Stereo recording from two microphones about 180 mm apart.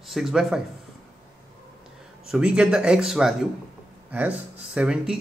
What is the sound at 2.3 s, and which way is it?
Speech, 5° right (ahead or behind).